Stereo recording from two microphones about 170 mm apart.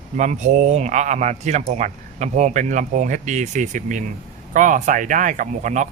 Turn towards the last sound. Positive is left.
turn(degrees=-45)  # may be behind; listen again after turning